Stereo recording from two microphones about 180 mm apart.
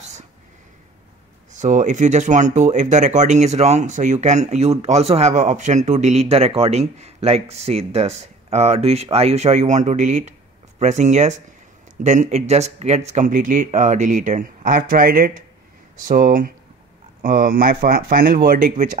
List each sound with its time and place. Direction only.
1.5 s speech: 40° right (ahead or behind)